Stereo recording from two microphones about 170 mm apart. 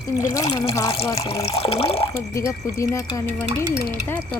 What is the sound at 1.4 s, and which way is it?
Speech, 35° left (ahead or behind).